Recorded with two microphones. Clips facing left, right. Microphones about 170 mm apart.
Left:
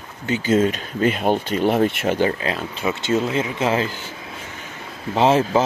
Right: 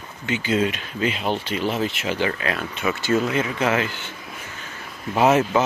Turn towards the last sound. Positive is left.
turn(degrees=30)  # may be behind; listen again after turning